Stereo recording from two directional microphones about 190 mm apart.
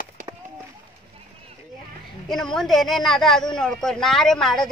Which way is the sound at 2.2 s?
Centre (ahead or behind).